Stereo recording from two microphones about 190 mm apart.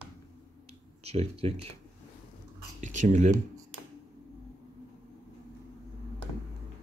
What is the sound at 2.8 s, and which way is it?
Speech, 40° right (ahead or behind).